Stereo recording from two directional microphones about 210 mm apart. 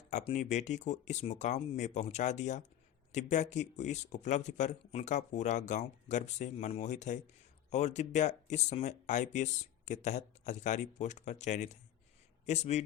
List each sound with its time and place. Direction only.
0.1 s speech: 35° left (ahead or behind)